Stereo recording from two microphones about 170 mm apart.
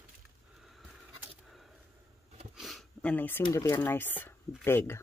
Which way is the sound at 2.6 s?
Centre (ahead or behind).